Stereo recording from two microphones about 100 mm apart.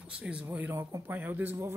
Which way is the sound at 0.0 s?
10° right (ahead or behind).